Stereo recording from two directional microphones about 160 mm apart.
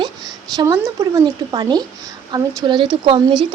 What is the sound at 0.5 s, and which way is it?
Speech, 20° right (ahead or behind).